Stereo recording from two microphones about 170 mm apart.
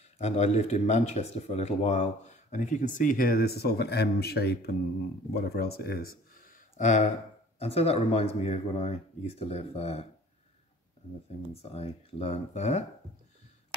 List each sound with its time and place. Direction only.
0.2 s a man's voice: 40° left (ahead or behind)
11.6 s speech: 35° left (ahead or behind)